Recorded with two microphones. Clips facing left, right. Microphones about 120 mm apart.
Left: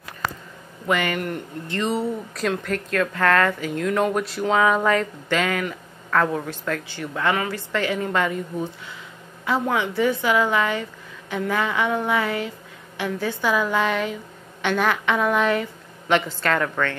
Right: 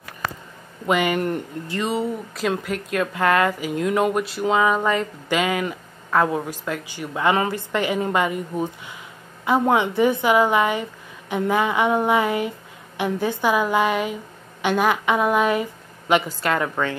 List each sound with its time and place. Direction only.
0.8 s a woman's voice: 15° right (ahead or behind)
5.3 s a woman's voice: 10° right (ahead or behind)